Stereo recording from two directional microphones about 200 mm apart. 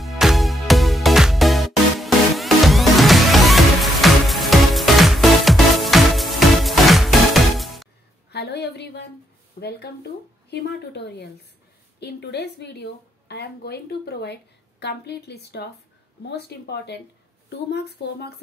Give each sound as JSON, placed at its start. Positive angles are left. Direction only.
{"t": 0.0, "sound": "music", "side_deg": 0}
{"t": 8.3, "sound": "a sound", "side_deg": 55}
{"t": 9.6, "sound": "a woman's voice", "side_deg": 55}